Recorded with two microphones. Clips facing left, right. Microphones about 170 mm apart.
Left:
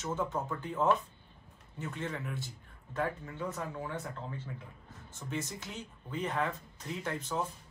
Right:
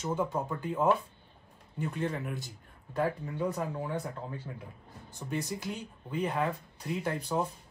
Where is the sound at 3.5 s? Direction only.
15° right (ahead or behind).